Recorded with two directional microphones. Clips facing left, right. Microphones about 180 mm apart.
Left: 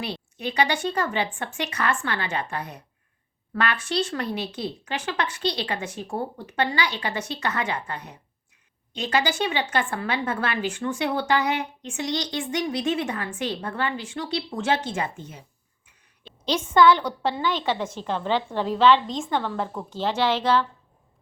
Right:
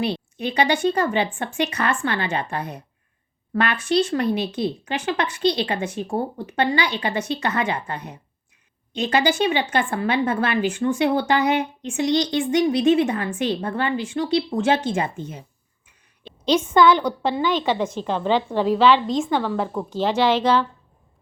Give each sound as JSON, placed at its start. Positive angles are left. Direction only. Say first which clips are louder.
{"t": 0.0, "sound": "a woman's voice", "louder": "right 6 dB", "side_deg": -25}